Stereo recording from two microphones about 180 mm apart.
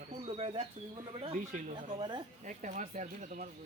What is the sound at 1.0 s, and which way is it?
Speech, 35° right (ahead or behind).